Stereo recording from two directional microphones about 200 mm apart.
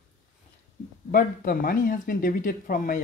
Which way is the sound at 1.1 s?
45° left (ahead or behind).